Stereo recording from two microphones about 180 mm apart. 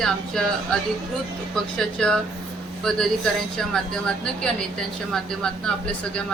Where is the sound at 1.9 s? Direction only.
5° left (ahead or behind).